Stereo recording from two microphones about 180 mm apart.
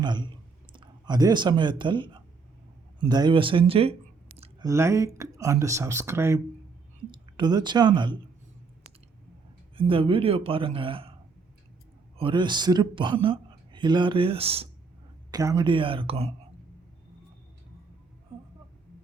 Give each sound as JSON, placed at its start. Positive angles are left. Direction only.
{"t": 0.0, "sound": "speech", "side_deg": -25}
{"t": 4.6, "sound": "speech", "side_deg": -15}
{"t": 7.1, "sound": "speech", "side_deg": -25}
{"t": 9.7, "sound": "speech", "side_deg": -30}
{"t": 12.1, "sound": "speech", "side_deg": -30}
{"t": 15.3, "sound": "speech", "side_deg": -20}